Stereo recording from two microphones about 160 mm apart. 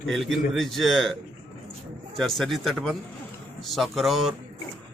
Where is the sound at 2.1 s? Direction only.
Centre (ahead or behind).